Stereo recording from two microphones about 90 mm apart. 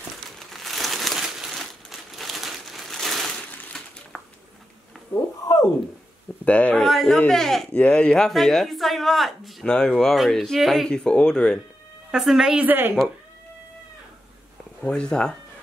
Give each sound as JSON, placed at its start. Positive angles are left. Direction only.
{"t": 0.4, "sound": "crumpling", "side_deg": 0}
{"t": 5.1, "sound": "a sound", "side_deg": 40}
{"t": 6.4, "sound": "speech", "side_deg": 15}
{"t": 6.8, "sound": "speech", "side_deg": 5}
{"t": 12.1, "sound": "a woman's voice", "side_deg": -5}
{"t": 12.6, "sound": "speech", "side_deg": -20}
{"t": 14.8, "sound": "speech", "side_deg": 10}